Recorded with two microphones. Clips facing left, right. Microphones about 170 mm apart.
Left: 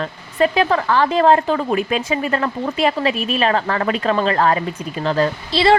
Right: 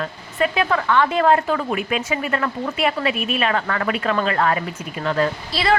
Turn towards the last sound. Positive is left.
turn(degrees=30)  # may be behind; listen again after turning